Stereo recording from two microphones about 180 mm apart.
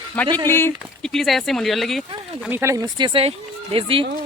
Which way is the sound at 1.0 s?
Centre (ahead or behind).